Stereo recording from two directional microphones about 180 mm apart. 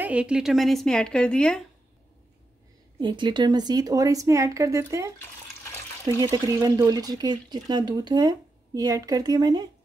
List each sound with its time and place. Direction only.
0.0 s a woman's voice: 5° right (ahead or behind)
3.0 s speech: 25° right (ahead or behind)
6.2 s speech: 20° right (ahead or behind)